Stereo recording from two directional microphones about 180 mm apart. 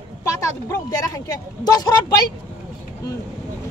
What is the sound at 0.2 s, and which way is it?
A woman's voice, 15° left (ahead or behind).